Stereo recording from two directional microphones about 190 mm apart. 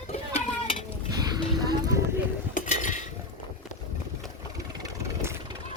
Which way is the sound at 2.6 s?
40° left (ahead or behind).